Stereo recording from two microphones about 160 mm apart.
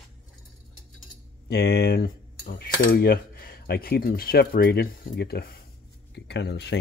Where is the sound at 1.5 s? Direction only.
90° left.